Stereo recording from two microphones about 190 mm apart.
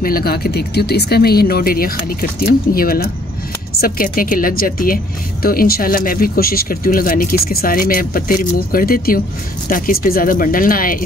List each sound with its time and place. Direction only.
0.0 s a woman's voice: 50° left (ahead or behind)